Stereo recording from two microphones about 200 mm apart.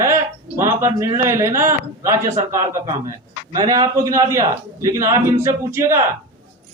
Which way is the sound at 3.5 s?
15° right (ahead or behind).